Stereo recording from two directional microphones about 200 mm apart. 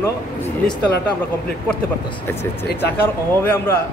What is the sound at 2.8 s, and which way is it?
A man's voice, 10° left (ahead or behind).